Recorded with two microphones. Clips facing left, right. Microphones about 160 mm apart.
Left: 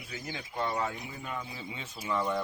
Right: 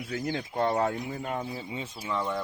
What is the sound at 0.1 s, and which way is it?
Speech, 55° right (ahead or behind).